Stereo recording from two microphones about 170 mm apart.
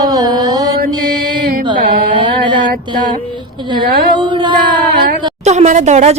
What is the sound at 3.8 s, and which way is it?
Speech, 60° right (ahead or behind).